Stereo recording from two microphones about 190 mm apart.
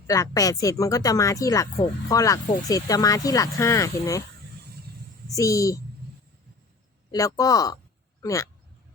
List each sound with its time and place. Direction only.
0.1 s speech: 20° left (ahead or behind)
5.3 s speech: 15° left (ahead or behind)
7.1 s speech: 20° left (ahead or behind)